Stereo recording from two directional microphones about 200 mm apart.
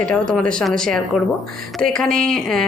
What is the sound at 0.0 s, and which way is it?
Speech, 5° left (ahead or behind).